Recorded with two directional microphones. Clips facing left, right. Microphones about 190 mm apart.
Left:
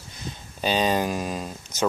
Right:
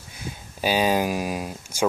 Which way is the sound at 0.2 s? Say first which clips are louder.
Right 2 dB; 10° right (ahead or behind).